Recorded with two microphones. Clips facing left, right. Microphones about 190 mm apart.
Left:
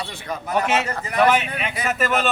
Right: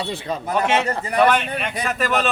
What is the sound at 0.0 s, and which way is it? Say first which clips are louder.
Speech: right 4 dB; 20° right (ahead or behind).